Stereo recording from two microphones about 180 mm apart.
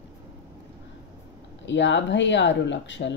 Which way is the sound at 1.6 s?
90° left.